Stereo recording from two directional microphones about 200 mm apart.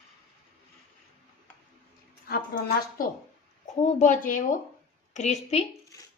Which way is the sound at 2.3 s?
50° left (ahead or behind).